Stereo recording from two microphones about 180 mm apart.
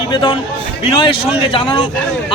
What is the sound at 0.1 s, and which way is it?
A man's voice, 25° left (ahead or behind).